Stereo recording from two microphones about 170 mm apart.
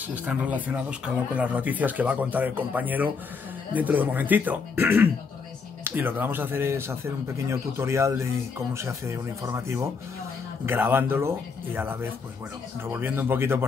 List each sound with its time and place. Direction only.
0.0 s speech: 10° right (ahead or behind)